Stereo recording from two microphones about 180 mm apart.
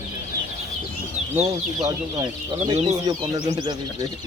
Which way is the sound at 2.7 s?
35° right (ahead or behind).